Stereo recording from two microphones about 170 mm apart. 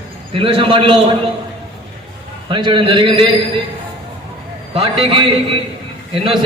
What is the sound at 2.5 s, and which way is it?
Speech, 30° right (ahead or behind).